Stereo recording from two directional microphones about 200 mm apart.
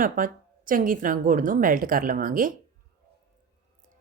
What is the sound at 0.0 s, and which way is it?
A woman's voice, 45° right (ahead or behind).